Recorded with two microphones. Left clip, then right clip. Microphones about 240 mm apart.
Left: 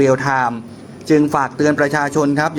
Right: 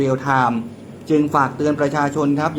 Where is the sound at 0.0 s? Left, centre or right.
Left.